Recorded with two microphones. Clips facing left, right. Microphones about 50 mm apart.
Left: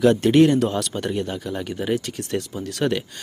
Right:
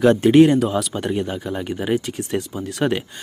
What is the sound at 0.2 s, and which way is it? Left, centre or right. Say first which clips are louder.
Speech: right 3 dB; centre.